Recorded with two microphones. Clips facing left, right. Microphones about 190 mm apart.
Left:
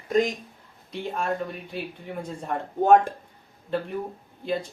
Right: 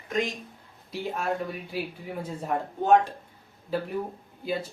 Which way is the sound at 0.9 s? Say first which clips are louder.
Left 1 dB; 5° right (ahead or behind).